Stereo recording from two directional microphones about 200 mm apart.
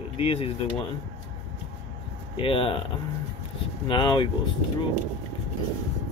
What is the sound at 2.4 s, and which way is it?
Speech, 25° left (ahead or behind).